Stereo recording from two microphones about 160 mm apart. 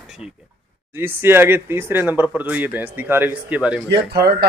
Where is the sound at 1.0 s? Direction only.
15° right (ahead or behind).